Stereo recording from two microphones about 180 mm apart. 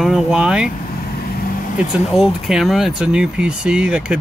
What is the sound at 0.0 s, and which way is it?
Speech, 5° right (ahead or behind).